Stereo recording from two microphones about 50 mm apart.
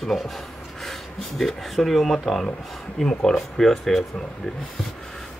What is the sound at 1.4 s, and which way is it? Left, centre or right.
Speech, centre.